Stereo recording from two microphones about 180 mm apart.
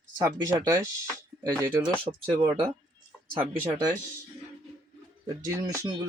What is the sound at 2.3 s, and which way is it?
Speech, 25° right (ahead or behind).